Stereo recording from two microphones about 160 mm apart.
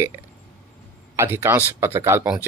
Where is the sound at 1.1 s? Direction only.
15° right (ahead or behind).